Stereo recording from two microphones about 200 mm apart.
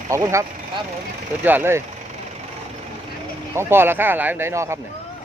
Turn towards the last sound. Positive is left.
turn(degrees=-15)  # may be behind; listen again after turning